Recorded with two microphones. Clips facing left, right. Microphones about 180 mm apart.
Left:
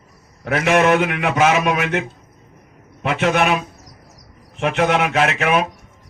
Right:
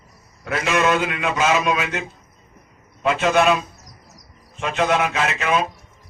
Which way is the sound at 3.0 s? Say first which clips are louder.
Right 1 dB; 60° left (ahead or behind).